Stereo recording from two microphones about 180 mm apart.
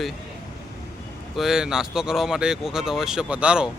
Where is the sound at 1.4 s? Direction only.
5° right (ahead or behind).